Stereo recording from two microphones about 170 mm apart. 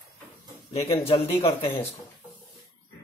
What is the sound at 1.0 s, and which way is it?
Speech, 35° left (ahead or behind).